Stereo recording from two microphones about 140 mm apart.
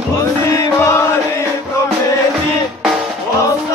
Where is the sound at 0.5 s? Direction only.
20° left (ahead or behind).